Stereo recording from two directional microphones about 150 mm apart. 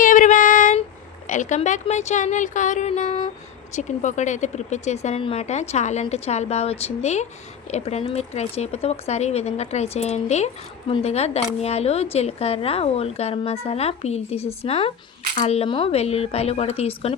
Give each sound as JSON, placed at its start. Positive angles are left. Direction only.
{"t": 0.0, "sound": "female singing", "side_deg": 60}
{"t": 1.3, "sound": "a woman's voice", "side_deg": 55}